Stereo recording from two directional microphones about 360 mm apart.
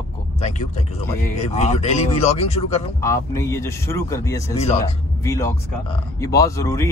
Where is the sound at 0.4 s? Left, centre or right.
Centre.